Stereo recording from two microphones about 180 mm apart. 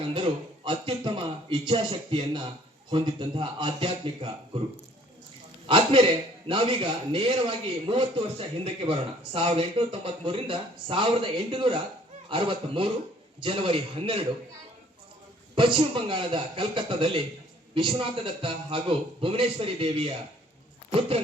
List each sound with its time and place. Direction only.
0.1 s a man's voice: 30° right (ahead or behind)
5.6 s a man's voice: 30° right (ahead or behind)
15.5 s a man's voice: 30° right (ahead or behind)